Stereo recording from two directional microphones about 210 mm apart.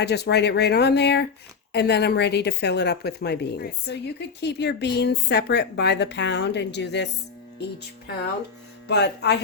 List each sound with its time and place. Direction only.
0.0 s a woman's voice: 50° left (ahead or behind)
8.9 s a woman's voice: 55° left (ahead or behind)